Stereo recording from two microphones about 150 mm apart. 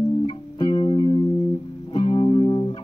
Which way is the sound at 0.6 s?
35° left (ahead or behind).